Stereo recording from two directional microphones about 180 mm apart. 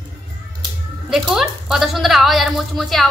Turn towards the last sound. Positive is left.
turn(degrees=0)  # may be behind; listen again after turning